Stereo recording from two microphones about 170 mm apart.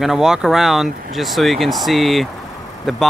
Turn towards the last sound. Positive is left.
turn(degrees=0)  # may be behind; listen again after turning